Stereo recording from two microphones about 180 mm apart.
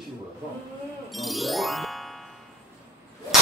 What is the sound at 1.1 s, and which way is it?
Music, centre (ahead or behind).